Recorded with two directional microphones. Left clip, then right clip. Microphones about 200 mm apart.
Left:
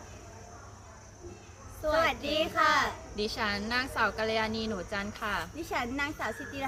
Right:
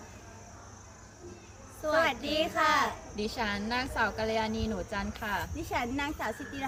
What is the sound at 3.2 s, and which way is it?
A woman's voice, 20° left (ahead or behind).